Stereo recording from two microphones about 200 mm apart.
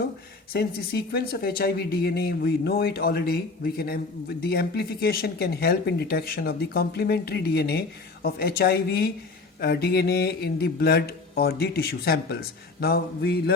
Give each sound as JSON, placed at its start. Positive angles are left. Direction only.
{"t": 0.5, "sound": "speech", "side_deg": 50}